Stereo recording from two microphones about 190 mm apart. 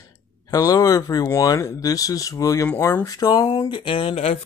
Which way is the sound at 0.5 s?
20° left (ahead or behind).